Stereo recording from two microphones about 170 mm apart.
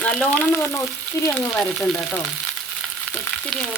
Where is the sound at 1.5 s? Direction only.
5° left (ahead or behind).